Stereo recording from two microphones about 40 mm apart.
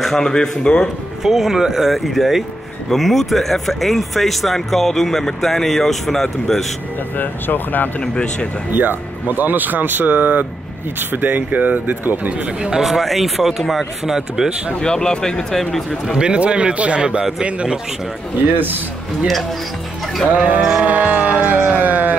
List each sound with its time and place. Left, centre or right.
0.0 s speech: centre
0.3 s speech: centre
1.2 s speech: centre
7.2 s speech: left
8.0 s speech: left
8.7 s speech: right
12.8 s speech: centre
14.8 s speech: centre
16.2 s speech: right
20.3 s sheep: right
20.8 s a sound: right